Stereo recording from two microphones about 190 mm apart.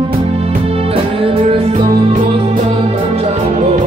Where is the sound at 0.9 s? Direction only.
30° right (ahead or behind).